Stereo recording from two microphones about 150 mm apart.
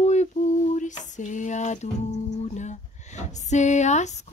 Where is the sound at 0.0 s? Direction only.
50° left (ahead or behind).